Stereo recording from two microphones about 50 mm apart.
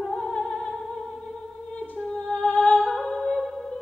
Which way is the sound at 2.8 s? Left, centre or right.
Centre.